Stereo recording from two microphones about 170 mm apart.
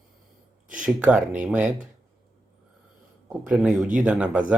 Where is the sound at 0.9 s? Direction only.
10° right (ahead or behind).